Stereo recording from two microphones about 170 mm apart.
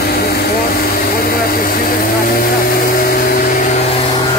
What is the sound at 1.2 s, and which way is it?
Vehicle, 60° left (ahead or behind).